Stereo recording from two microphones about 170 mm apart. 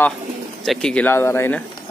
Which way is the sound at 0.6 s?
5° left (ahead or behind).